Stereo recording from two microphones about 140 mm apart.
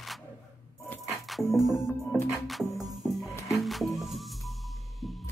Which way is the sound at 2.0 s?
20° left (ahead or behind).